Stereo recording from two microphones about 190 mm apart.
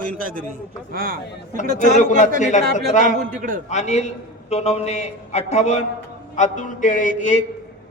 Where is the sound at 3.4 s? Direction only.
45° right (ahead or behind).